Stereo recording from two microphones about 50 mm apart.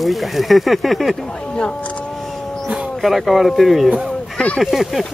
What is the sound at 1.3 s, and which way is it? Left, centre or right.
Speech, centre.